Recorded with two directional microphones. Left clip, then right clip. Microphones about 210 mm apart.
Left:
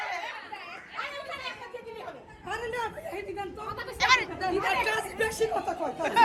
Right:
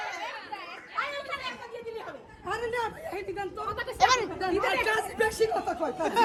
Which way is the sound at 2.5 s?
45° right (ahead or behind).